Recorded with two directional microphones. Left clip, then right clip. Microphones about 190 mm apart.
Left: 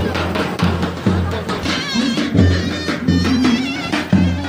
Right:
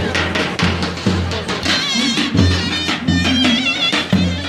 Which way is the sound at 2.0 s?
10° left (ahead or behind).